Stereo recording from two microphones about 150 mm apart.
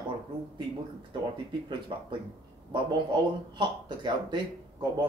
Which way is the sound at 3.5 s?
30° right (ahead or behind).